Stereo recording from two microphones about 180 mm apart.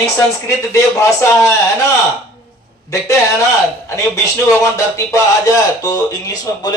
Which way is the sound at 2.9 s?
15° left (ahead or behind).